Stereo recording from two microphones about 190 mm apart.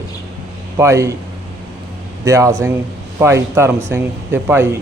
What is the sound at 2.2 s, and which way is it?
A man's voice, 15° right (ahead or behind).